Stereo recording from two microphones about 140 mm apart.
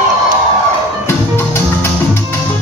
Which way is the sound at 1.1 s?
15° left (ahead or behind).